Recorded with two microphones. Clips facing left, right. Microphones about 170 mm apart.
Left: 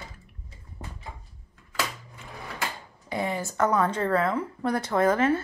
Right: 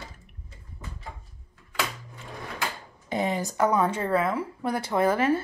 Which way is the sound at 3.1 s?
20° right (ahead or behind).